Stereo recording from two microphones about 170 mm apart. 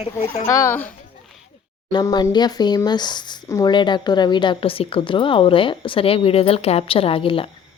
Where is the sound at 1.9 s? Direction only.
25° left (ahead or behind).